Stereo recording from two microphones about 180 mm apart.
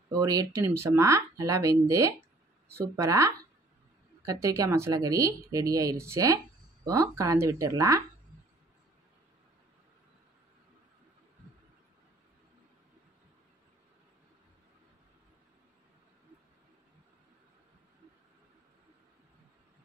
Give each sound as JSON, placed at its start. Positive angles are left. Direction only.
{"t": 0.1, "sound": "speech", "side_deg": -20}